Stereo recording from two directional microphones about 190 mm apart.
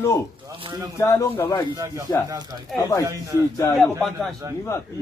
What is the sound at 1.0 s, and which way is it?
Speech, 15° left (ahead or behind).